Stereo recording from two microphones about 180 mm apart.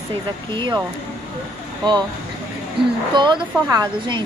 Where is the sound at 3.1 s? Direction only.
25° right (ahead or behind).